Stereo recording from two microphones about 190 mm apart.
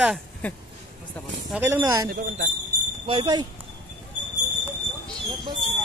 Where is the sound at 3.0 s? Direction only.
25° right (ahead or behind).